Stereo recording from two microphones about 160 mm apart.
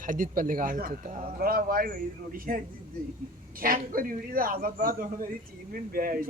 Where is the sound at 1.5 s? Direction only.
65° right (ahead or behind).